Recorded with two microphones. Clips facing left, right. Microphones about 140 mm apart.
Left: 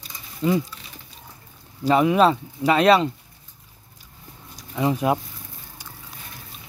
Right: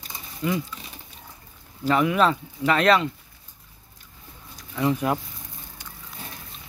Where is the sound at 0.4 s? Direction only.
25° left (ahead or behind).